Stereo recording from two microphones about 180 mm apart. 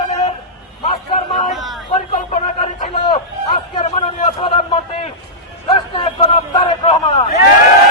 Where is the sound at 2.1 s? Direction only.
45° left (ahead or behind).